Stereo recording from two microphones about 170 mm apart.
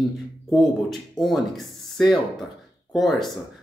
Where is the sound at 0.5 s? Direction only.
Centre (ahead or behind).